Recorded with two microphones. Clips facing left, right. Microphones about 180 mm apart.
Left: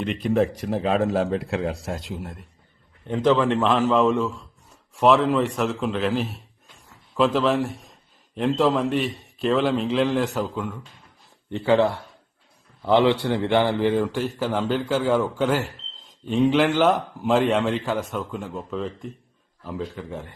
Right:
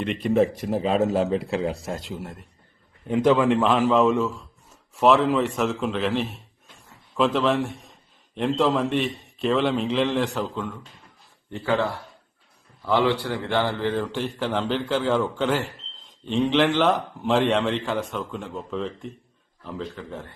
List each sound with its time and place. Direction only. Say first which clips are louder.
0.0 s a man's voice: right 1 dB; centre (ahead or behind)
11.5 s a man's voice: left 5 dB; 20° left (ahead or behind)